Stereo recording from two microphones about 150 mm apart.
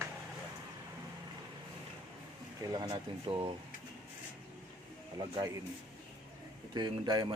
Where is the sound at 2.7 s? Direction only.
25° right (ahead or behind).